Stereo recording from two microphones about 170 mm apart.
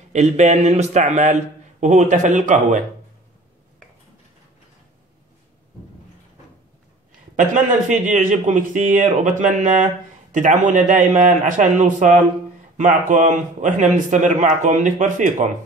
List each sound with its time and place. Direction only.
0.1 s a man's voice: 45° right (ahead or behind)
7.3 s a man's voice: 50° right (ahead or behind)